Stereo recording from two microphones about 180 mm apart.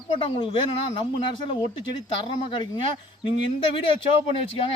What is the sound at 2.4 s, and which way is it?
Speech, 25° left (ahead or behind).